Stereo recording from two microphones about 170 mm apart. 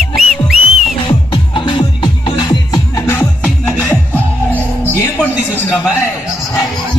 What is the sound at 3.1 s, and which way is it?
Music, 10° left (ahead or behind).